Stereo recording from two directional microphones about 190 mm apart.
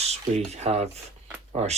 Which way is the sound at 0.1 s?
35° right (ahead or behind).